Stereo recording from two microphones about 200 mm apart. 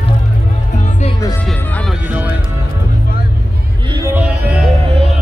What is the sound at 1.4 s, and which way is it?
Music, centre (ahead or behind).